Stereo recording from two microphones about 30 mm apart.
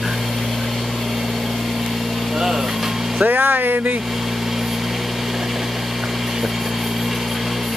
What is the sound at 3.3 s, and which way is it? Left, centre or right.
Speech, right.